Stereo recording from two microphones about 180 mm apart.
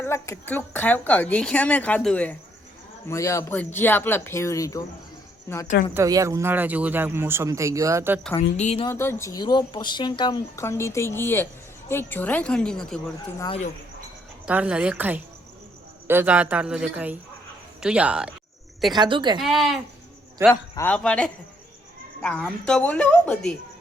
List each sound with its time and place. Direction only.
0.0 s speech: 15° left (ahead or behind)
5.9 s speech: 20° right (ahead or behind)
8.4 s a woman's voice: 35° left (ahead or behind)
8.9 s speech: 15° left (ahead or behind)
14.4 s speech: 5° right (ahead or behind)
18.9 s speech: 25° right (ahead or behind)
19.4 s speech: centre (ahead or behind)
20.5 s speech: 10° left (ahead or behind)